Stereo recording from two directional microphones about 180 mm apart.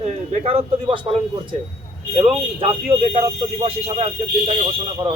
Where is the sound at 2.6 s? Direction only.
35° right (ahead or behind).